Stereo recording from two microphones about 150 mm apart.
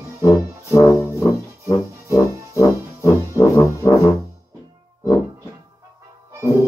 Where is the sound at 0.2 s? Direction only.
20° left (ahead or behind).